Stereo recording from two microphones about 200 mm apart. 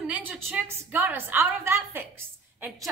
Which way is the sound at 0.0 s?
5° right (ahead or behind).